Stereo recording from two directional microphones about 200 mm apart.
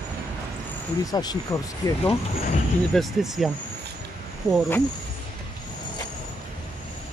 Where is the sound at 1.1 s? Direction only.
20° left (ahead or behind).